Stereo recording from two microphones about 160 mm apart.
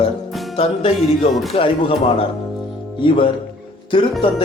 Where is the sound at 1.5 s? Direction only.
35° left (ahead or behind).